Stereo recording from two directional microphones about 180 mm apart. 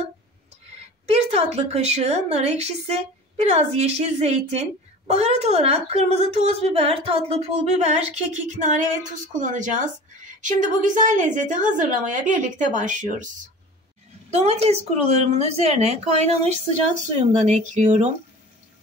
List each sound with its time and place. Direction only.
1.1 s a woman's voice: 35° right (ahead or behind)
14.3 s a woman's voice: 35° right (ahead or behind)